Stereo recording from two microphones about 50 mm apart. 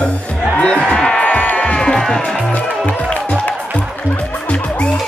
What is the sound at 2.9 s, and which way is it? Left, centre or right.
Music, left.